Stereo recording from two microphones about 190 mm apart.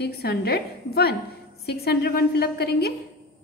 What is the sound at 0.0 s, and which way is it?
A woman's voice, 60° left (ahead or behind).